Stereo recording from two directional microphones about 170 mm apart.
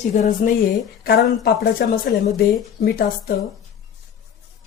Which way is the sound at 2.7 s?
60° left (ahead or behind).